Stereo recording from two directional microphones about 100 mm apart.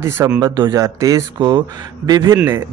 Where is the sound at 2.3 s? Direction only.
25° right (ahead or behind).